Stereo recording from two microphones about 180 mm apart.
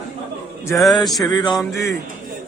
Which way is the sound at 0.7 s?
Centre (ahead or behind).